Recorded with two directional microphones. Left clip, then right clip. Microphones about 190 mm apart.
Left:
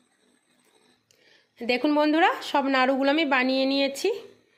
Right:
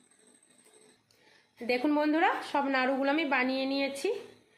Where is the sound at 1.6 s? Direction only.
50° left (ahead or behind).